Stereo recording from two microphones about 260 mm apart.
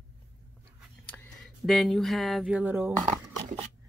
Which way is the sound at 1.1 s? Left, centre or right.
Centre.